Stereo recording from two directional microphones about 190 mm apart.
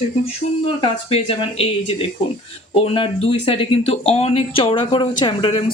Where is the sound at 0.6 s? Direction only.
30° left (ahead or behind).